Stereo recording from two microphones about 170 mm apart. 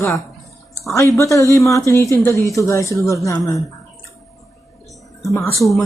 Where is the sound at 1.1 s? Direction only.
20° left (ahead or behind).